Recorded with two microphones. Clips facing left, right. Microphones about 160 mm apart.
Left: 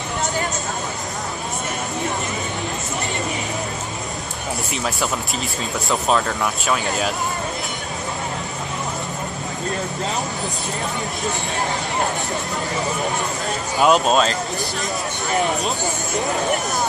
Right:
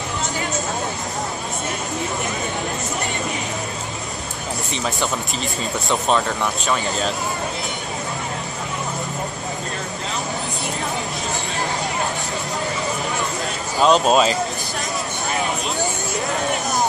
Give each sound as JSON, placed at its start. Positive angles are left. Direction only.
{"t": 5.9, "sound": "speech", "side_deg": 0}
{"t": 13.7, "sound": "speech", "side_deg": 5}